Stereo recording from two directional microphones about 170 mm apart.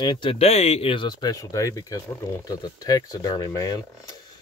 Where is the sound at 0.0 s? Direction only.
30° left (ahead or behind).